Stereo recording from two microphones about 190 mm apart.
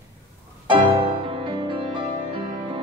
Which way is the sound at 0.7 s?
25° right (ahead or behind).